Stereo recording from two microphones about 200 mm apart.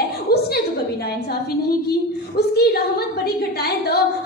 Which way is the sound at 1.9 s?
55° left (ahead or behind).